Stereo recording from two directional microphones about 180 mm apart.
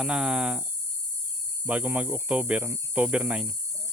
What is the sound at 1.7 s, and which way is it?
Speech, 10° right (ahead or behind).